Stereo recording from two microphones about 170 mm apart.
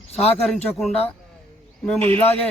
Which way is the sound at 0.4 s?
Centre (ahead or behind).